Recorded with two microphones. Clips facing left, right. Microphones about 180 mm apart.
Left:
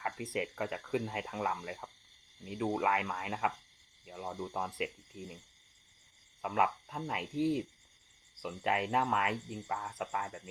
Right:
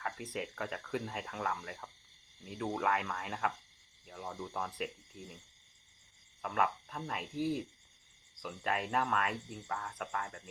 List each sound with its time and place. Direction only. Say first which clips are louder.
0.0 s speech: left 3 dB; 15° left (ahead or behind)
6.4 s cricket: left 2 dB; 15° left (ahead or behind)